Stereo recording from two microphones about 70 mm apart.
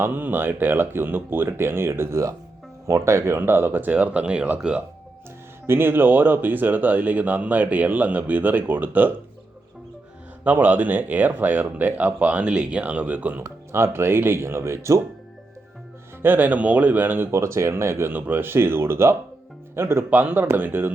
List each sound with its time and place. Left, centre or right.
0.0 s speech: right
5.6 s speech: right
10.4 s speech: right
13.4 s speech: right
16.2 s speech: right
17.3 s speech: right
20.1 s speech: right